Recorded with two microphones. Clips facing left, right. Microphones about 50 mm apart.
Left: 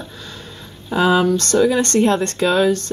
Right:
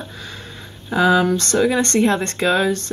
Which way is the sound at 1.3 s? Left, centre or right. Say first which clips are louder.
Left 2 dB; right.